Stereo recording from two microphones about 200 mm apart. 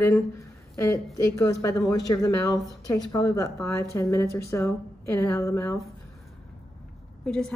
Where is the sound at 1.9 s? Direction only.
20° left (ahead or behind).